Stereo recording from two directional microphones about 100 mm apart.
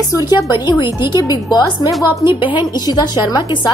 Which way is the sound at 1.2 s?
40° left (ahead or behind).